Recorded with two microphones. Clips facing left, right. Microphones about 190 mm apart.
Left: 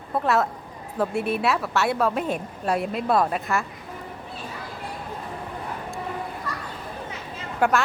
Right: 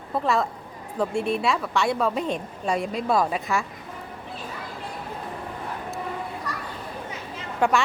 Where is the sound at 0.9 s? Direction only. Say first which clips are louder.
Even; 5° left (ahead or behind).